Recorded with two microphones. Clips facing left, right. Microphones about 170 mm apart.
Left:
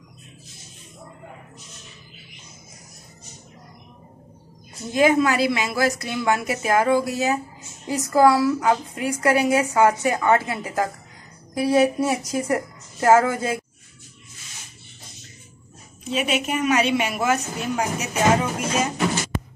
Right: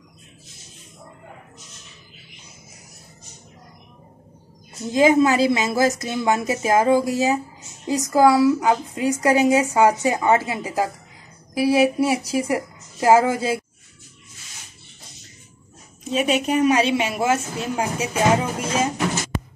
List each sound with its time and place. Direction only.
4.9 s a woman's voice: 20° right (ahead or behind)
16.1 s a woman's voice: 40° right (ahead or behind)